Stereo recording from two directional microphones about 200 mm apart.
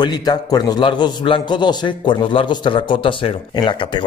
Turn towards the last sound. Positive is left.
turn(degrees=25)  # may be behind; listen again after turning